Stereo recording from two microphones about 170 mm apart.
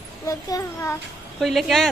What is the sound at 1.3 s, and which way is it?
Speech, centre (ahead or behind).